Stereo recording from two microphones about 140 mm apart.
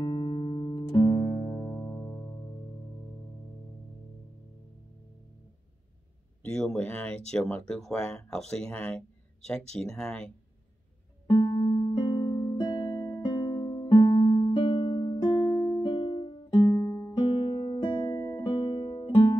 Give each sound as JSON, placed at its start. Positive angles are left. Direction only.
{"t": 0.0, "sound": "music", "side_deg": 35}
{"t": 6.5, "sound": "speech", "side_deg": 5}
{"t": 11.2, "sound": "music", "side_deg": 30}
{"t": 15.8, "sound": "music", "side_deg": 35}
{"t": 17.3, "sound": "music", "side_deg": 40}